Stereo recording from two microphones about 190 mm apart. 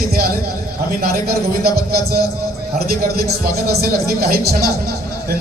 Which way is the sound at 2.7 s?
55° right (ahead or behind).